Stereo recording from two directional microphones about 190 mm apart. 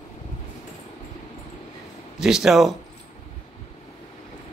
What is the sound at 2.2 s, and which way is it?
Speech, centre (ahead or behind).